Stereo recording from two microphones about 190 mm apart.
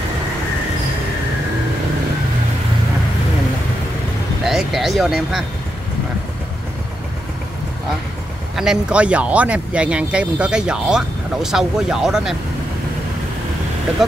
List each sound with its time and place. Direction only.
4.5 s speech: centre (ahead or behind)
8.5 s speech: 5° right (ahead or behind)